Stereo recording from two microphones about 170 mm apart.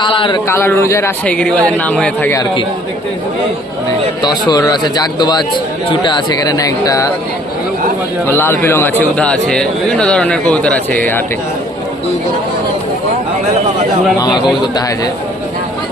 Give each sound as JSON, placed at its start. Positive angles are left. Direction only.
{"t": 0.0, "sound": "speech", "side_deg": 30}
{"t": 0.4, "sound": "speech", "side_deg": 15}
{"t": 1.2, "sound": "speech", "side_deg": 5}
{"t": 2.3, "sound": "speech", "side_deg": 25}
{"t": 4.2, "sound": "speech", "side_deg": 25}
{"t": 8.3, "sound": "speech", "side_deg": 15}
{"t": 14.2, "sound": "speech", "side_deg": 25}